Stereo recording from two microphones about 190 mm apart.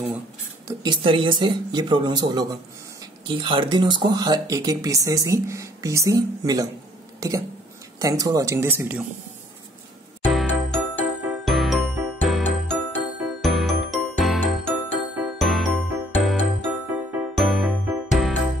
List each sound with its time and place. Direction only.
0.7 s speech: 25° right (ahead or behind); by 9.0 s 10° right (ahead or behind)
10.2 s music: 5° left (ahead or behind)
17.4 s music: centre (ahead or behind)